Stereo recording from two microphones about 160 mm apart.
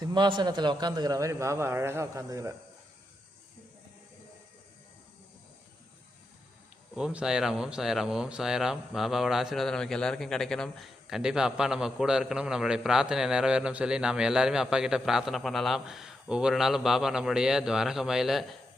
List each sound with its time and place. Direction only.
0.0 s a man's voice: 30° right (ahead or behind)
6.9 s speech: 5° right (ahead or behind)